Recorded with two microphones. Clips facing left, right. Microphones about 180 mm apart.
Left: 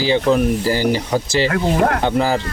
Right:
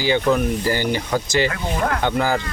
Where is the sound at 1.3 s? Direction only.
30° left (ahead or behind).